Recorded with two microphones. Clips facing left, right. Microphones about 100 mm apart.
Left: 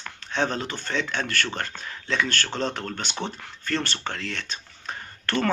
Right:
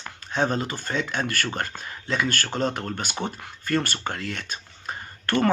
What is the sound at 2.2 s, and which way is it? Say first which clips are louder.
Speech: right 2 dB; 45° right (ahead or behind).